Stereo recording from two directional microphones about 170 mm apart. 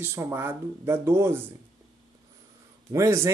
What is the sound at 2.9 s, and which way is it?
Speech, 15° right (ahead or behind).